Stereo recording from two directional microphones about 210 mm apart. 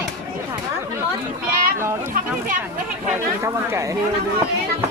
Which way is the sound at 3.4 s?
15° right (ahead or behind).